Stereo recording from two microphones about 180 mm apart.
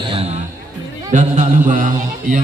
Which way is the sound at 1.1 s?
45° right (ahead or behind).